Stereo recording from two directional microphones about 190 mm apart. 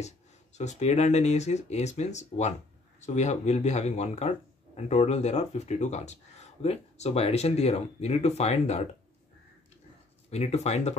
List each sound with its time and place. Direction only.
0.6 s speech: 35° left (ahead or behind)
10.3 s speech: 35° left (ahead or behind)